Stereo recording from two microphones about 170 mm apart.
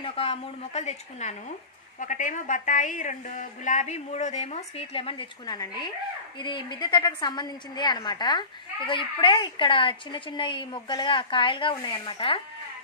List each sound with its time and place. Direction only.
0.0 s a woman's voice: 35° left (ahead or behind)